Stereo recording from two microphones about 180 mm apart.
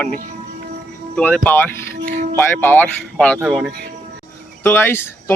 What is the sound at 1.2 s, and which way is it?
Speech, 5° left (ahead or behind).